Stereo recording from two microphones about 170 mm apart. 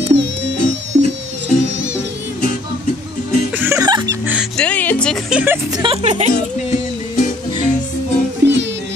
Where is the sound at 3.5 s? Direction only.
10° right (ahead or behind).